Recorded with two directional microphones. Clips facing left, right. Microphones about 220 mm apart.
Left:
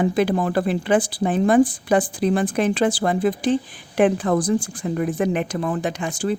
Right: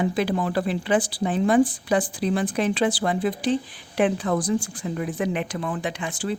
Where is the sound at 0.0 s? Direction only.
50° left (ahead or behind).